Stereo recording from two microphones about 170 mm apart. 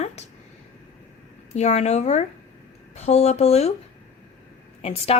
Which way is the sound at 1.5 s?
40° left (ahead or behind).